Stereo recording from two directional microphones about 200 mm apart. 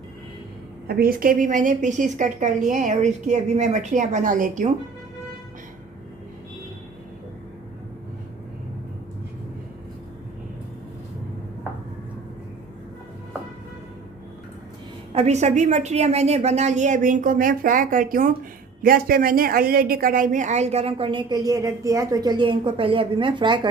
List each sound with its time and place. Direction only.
0.9 s a woman's voice: 50° right (ahead or behind)
15.1 s a woman's voice: 35° right (ahead or behind)